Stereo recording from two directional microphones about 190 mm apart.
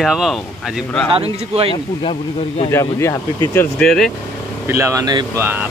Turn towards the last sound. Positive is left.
turn(degrees=-20)  # may be behind; listen again after turning